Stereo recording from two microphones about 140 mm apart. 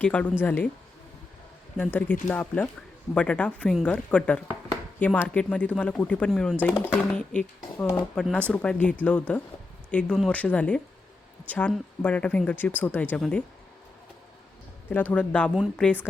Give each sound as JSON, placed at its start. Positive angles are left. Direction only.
{"t": 0.0, "sound": "speech", "side_deg": 10}
{"t": 1.8, "sound": "speech", "side_deg": 10}
{"t": 15.1, "sound": "speech", "side_deg": 10}